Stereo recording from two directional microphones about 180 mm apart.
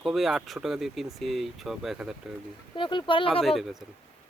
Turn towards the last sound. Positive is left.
turn(degrees=0)  # may be behind; listen again after turning